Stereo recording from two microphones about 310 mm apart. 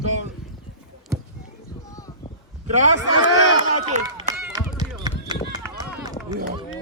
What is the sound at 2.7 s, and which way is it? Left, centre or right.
Speech, right.